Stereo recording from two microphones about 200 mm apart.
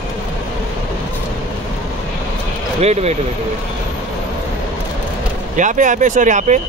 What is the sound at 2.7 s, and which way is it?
Speech, 35° right (ahead or behind).